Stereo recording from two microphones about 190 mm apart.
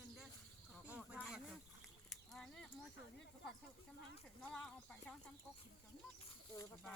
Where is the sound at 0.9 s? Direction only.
5° right (ahead or behind).